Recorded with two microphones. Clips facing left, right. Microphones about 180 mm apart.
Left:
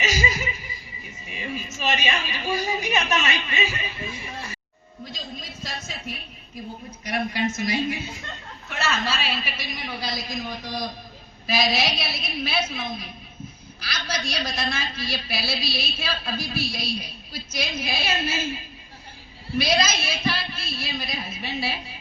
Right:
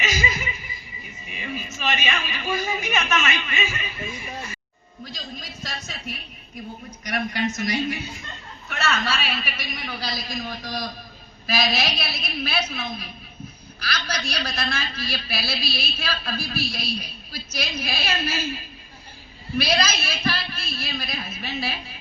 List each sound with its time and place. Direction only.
0.0 s chuckle: 40° left (ahead or behind)
1.3 s a sound: 35° left (ahead or behind)
1.7 s a woman's voice: 35° left (ahead or behind)
7.0 s a man's voice: 25° left (ahead or behind)
19.5 s a man's voice: 25° left (ahead or behind)